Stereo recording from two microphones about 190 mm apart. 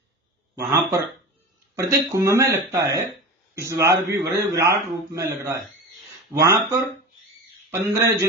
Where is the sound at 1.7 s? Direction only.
15° right (ahead or behind).